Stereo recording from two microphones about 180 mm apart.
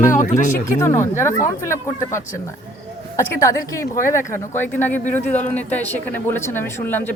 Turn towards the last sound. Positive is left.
turn(degrees=10)  # may be behind; listen again after turning